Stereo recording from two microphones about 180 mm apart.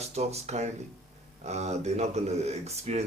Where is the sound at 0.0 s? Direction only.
35° right (ahead or behind).